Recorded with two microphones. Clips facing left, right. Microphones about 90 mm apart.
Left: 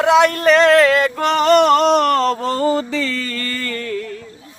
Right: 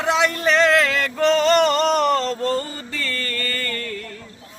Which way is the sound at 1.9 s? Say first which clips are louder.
Left 4 dB; 70° left (ahead or behind).